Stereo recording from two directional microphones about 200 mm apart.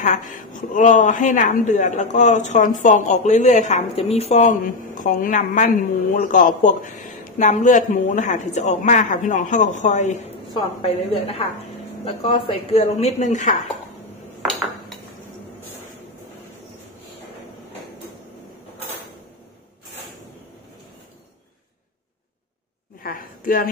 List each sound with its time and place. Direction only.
0.0 s a woman's voice: 40° left (ahead or behind)
14.4 s dishes: centre (ahead or behind)
23.0 s a sound: 45° left (ahead or behind)